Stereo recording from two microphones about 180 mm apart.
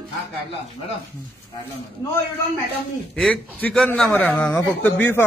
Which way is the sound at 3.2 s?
5° left (ahead or behind).